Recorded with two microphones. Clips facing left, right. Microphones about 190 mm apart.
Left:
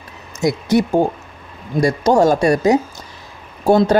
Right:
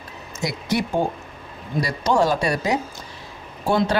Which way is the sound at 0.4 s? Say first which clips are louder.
Left 8 dB; 45° left (ahead or behind).